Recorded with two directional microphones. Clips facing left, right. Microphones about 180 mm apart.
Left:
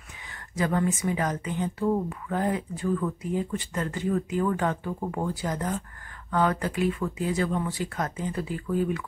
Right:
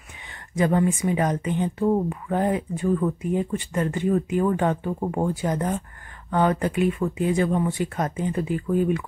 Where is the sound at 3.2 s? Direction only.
15° right (ahead or behind).